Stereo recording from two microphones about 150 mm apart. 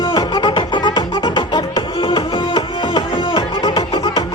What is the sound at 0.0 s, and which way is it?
Music, 30° left (ahead or behind).